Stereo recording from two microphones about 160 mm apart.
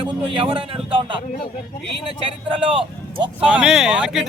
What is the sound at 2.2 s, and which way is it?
A man's voice, 30° right (ahead or behind).